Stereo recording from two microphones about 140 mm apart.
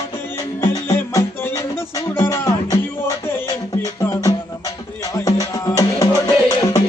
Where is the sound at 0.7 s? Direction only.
25° left (ahead or behind).